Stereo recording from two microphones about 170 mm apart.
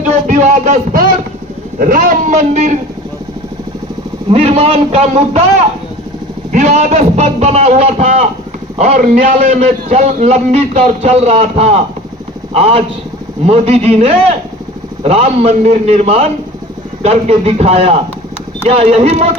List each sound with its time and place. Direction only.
0.3 s a man's voice: 45° right (ahead or behind)
4.3 s a man's voice: 40° right (ahead or behind)
6.5 s a man's voice: 45° right (ahead or behind)